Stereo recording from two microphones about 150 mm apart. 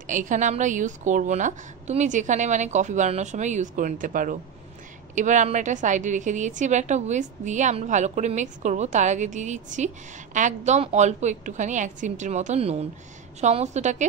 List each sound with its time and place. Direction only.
0.0 s a woman's voice: 60° right (ahead or behind)